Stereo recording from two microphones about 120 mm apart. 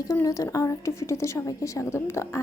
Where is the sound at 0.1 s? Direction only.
25° left (ahead or behind).